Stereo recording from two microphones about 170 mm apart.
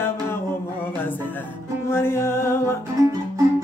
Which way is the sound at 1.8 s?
15° left (ahead or behind).